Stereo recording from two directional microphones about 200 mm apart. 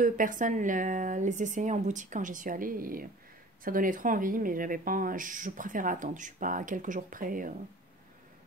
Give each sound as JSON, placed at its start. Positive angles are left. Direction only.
{"t": 0.0, "sound": "speech", "side_deg": -40}